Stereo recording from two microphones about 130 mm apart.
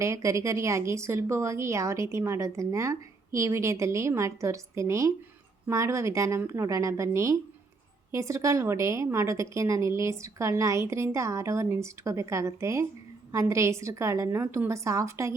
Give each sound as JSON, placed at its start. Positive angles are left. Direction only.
{"t": 0.0, "sound": "a woman's voice", "side_deg": -25}